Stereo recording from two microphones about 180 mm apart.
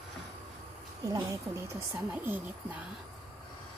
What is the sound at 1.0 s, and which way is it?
Speech, 20° right (ahead or behind).